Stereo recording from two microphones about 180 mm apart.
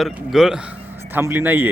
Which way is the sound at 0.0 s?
Centre (ahead or behind).